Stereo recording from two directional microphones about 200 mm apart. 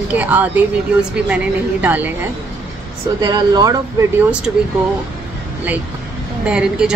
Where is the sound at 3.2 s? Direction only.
20° right (ahead or behind).